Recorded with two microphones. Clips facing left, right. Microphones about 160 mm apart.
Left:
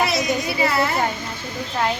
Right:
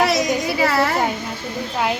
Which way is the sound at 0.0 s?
90° right.